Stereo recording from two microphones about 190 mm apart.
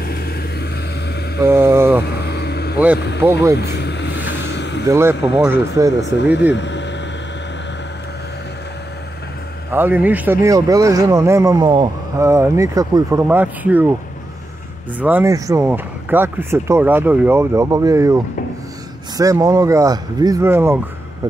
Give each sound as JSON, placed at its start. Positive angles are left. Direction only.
{"t": 0.0, "sound": "vehicle", "side_deg": 55}
{"t": 1.4, "sound": "vehicle", "side_deg": -15}
{"t": 2.1, "sound": "vehicle", "side_deg": 60}
{"t": 3.2, "sound": "speech", "side_deg": -10}
{"t": 3.5, "sound": "vehicle", "side_deg": 60}
{"t": 4.8, "sound": "speech", "side_deg": -15}
{"t": 6.5, "sound": "vehicle", "side_deg": 70}
{"t": 9.7, "sound": "speech", "side_deg": -10}
{"t": 12.2, "sound": "speech", "side_deg": -15}
{"t": 15.0, "sound": "speech", "side_deg": -10}